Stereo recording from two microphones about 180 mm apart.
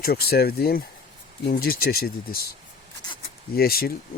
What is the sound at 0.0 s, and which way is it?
Speech, 60° left (ahead or behind).